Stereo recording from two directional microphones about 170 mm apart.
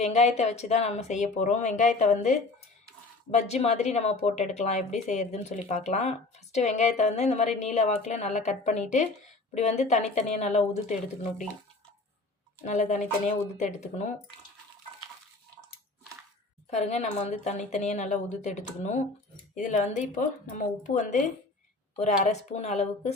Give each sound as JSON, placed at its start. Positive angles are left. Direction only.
{"t": 0.0, "sound": "a woman's voice", "side_deg": 40}
{"t": 12.6, "sound": "speech", "side_deg": 45}
{"t": 16.6, "sound": "a woman's voice", "side_deg": 40}